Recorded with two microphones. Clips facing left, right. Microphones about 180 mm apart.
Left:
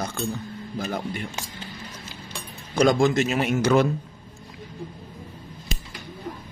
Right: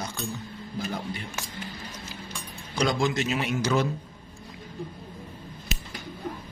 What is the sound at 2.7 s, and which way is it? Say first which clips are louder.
A man's voice: left 7 dB; 50° left (ahead or behind).